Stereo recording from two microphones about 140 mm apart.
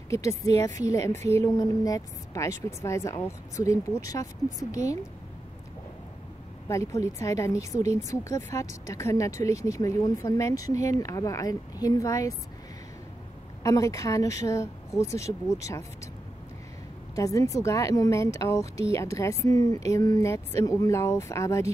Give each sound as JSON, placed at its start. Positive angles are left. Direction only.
{"t": 0.1, "sound": "speech", "side_deg": 20}
{"t": 6.7, "sound": "speech", "side_deg": 20}
{"t": 7.7, "sound": "speech", "side_deg": -55}
{"t": 8.1, "sound": "speech", "side_deg": 20}
{"t": 13.6, "sound": "speech", "side_deg": 25}
{"t": 17.1, "sound": "speech", "side_deg": 25}